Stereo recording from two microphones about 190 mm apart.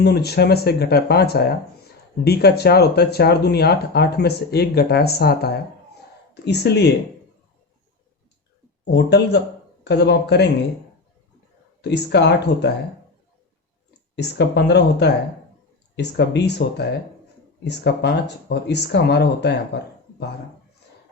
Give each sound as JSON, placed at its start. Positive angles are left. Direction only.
{"t": 0.0, "sound": "speech", "side_deg": 60}
{"t": 8.8, "sound": "speech", "side_deg": 60}
{"t": 11.8, "sound": "speech", "side_deg": 65}
{"t": 14.2, "sound": "speech", "side_deg": 60}